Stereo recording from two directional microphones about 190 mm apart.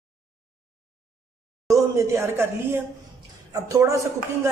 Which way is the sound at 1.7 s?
15° right (ahead or behind).